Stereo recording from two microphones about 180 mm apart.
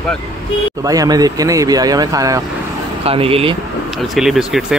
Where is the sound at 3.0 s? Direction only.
30° right (ahead or behind).